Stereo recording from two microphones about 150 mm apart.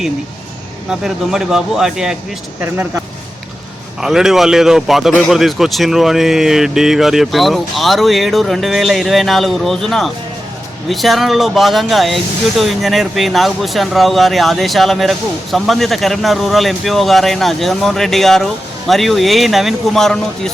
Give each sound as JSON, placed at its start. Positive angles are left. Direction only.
{"t": 0.9, "sound": "a man's voice", "side_deg": -5}
{"t": 4.0, "sound": "a man's voice", "side_deg": -5}